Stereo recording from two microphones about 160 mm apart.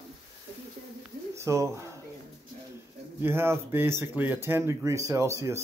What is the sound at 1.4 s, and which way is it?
Speech, 20° right (ahead or behind).